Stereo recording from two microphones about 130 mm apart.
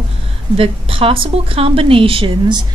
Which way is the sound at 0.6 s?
45° right (ahead or behind).